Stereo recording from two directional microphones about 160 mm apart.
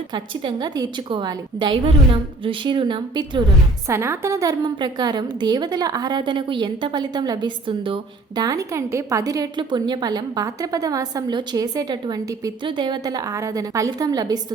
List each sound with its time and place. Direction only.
0.1 s a woman's voice: 25° right (ahead or behind)
3.8 s a woman's voice: 15° right (ahead or behind)